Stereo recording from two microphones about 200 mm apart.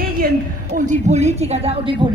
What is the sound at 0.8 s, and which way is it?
Speech, 35° right (ahead or behind).